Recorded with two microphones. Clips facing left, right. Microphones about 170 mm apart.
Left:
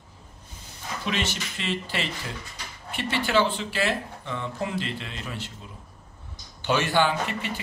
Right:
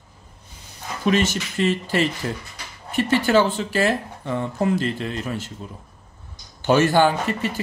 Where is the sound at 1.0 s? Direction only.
45° right (ahead or behind).